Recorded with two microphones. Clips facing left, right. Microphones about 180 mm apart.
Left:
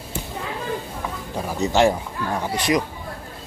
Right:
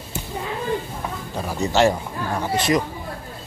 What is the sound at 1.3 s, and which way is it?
Speech, 15° left (ahead or behind).